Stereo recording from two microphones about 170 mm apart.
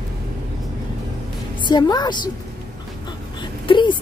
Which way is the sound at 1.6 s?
25° left (ahead or behind).